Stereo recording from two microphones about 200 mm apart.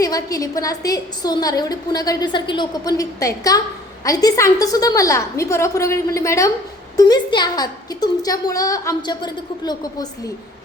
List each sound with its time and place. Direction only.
0.0 s a woman's voice: 15° left (ahead or behind)